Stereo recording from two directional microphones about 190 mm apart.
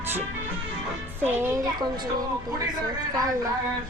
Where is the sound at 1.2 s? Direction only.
10° right (ahead or behind).